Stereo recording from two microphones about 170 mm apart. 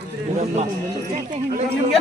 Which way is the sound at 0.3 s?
40° right (ahead or behind).